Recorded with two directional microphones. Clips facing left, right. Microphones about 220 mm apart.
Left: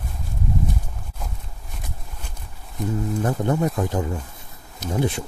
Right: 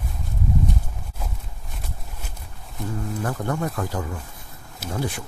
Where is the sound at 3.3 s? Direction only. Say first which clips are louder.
Left 4 dB; 20° left (ahead or behind).